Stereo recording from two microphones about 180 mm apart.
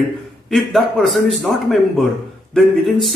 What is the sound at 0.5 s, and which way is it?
A man's voice, centre (ahead or behind).